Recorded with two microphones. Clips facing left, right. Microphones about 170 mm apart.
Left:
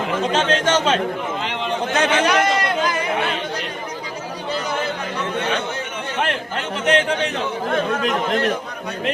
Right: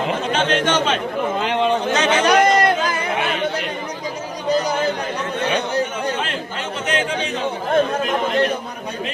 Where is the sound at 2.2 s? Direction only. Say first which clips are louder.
Right 4 dB; 45° right (ahead or behind).